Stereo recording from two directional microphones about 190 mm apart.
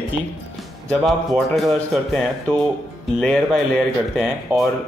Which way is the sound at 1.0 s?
Centre (ahead or behind).